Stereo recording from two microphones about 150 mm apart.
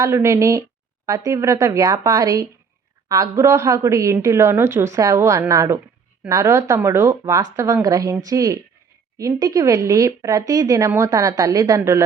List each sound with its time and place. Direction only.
0.0 s a woman's voice: 20° right (ahead or behind)